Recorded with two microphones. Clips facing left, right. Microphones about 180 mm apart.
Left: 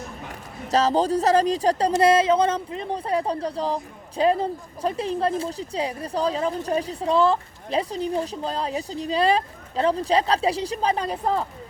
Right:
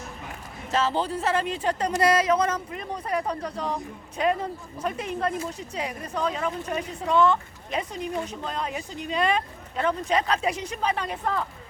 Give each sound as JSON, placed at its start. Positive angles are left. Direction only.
{"t": 0.7, "sound": "speech", "side_deg": 40}